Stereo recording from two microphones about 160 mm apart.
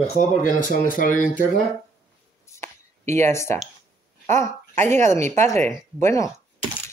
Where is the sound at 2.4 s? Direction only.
15° left (ahead or behind).